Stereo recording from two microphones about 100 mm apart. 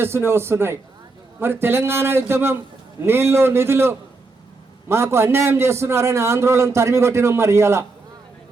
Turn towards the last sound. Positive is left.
turn(degrees=-25)  # may be behind; listen again after turning